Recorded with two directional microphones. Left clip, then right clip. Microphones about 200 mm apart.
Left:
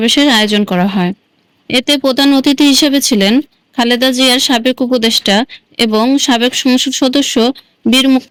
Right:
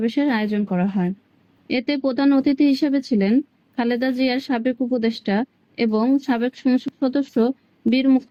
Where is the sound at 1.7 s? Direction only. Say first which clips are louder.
Left 11 dB; 45° left (ahead or behind).